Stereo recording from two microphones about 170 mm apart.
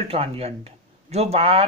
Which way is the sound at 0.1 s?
35° right (ahead or behind).